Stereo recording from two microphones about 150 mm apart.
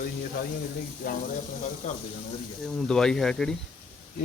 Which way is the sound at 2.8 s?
5° left (ahead or behind).